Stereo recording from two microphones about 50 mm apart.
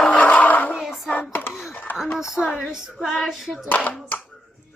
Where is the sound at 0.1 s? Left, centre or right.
Left.